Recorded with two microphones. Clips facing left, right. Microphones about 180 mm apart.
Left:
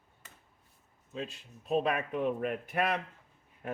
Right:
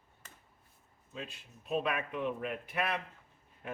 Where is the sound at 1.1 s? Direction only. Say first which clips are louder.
Left 5 dB; 35° left (ahead or behind).